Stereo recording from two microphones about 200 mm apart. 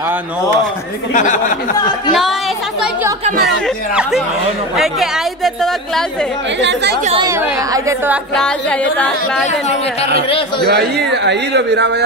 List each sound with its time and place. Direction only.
1.1 s speech: 40° left (ahead or behind)
3.4 s a woman's voice: centre (ahead or behind)
6.6 s speech: 60° right (ahead or behind)
7.2 s speech: 15° right (ahead or behind)
8.4 s a woman's voice: 5° left (ahead or behind)
10.1 s speech: 30° left (ahead or behind)
10.7 s speech: 55° right (ahead or behind)